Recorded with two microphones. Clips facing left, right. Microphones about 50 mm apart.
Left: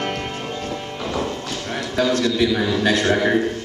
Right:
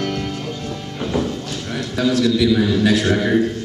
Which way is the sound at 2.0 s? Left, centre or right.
Centre.